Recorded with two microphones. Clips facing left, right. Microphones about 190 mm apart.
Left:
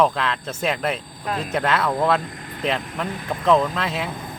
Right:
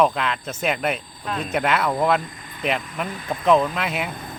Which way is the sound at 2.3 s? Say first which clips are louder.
Left 5 dB; 60° left (ahead or behind).